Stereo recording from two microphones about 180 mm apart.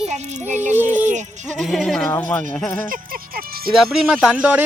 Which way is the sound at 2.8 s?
50° right (ahead or behind).